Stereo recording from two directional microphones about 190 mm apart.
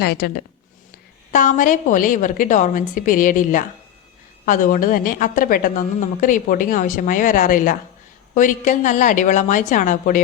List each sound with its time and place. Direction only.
0.0 s speech: 55° left (ahead or behind)
1.3 s a woman's voice: 40° left (ahead or behind)